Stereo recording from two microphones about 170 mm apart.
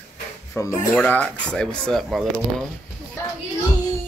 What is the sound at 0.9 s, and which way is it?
Speech, 10° left (ahead or behind).